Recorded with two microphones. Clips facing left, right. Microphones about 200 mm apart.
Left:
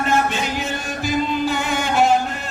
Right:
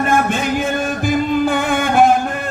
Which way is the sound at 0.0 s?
50° right (ahead or behind).